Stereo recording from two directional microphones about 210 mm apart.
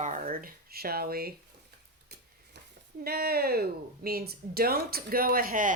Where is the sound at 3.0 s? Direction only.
45° right (ahead or behind).